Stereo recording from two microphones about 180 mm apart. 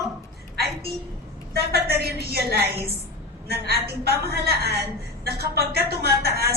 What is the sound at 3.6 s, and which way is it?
A woman's voice, 60° right (ahead or behind).